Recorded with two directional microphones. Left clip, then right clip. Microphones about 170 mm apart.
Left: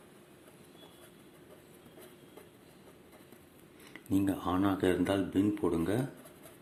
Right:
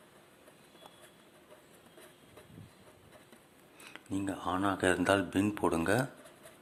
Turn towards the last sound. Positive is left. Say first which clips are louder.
# right 2 dB
turn(degrees=-30)  # may be behind; listen again after turning